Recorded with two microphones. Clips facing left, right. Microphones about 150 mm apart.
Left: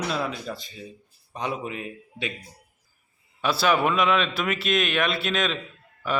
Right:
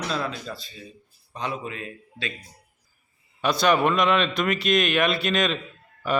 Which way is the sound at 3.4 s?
5° left (ahead or behind).